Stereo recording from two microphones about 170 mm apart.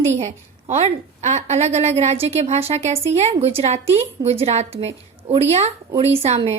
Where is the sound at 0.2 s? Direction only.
40° right (ahead or behind).